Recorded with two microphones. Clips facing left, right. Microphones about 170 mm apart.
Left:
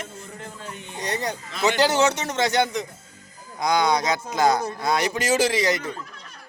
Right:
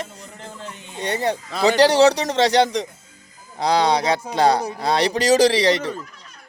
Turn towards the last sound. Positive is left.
turn(degrees=-35)  # may be behind; listen again after turning